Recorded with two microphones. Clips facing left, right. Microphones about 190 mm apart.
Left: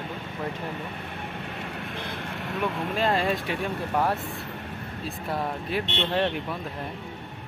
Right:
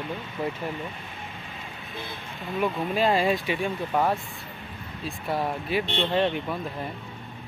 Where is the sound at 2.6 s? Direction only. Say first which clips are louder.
Right 3 dB; 5° right (ahead or behind).